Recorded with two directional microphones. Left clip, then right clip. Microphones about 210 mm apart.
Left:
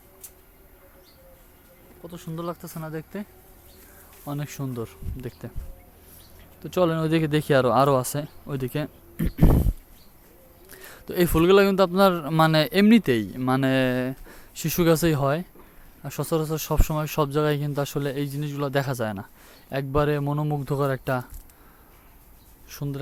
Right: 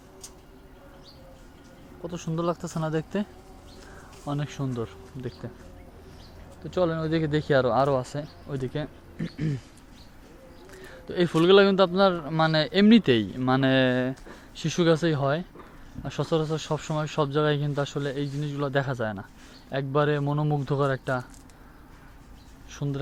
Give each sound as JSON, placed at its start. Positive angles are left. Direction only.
{"t": 2.0, "sound": "speech", "side_deg": 0}
{"t": 4.3, "sound": "speech", "side_deg": 20}
{"t": 6.6, "sound": "speech", "side_deg": 30}
{"t": 9.1, "sound": "a sound", "side_deg": 40}
{"t": 10.8, "sound": "speech", "side_deg": 30}
{"t": 22.7, "sound": "speech", "side_deg": 20}